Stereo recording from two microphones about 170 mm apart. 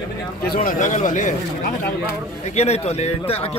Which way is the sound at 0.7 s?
45° left (ahead or behind).